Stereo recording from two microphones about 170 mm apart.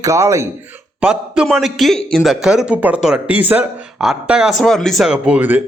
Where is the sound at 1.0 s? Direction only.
5° right (ahead or behind).